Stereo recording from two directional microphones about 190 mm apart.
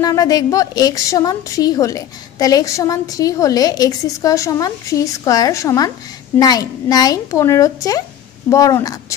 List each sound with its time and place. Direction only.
0.0 s a woman's voice: 20° left (ahead or behind)